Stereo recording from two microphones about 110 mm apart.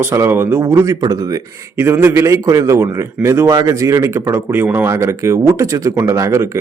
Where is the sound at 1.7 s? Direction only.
20° right (ahead or behind).